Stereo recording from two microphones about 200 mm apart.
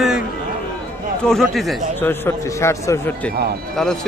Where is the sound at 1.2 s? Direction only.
Centre (ahead or behind).